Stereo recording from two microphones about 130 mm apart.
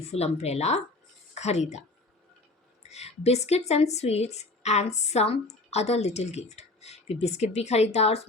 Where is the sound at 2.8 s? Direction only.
55° left (ahead or behind).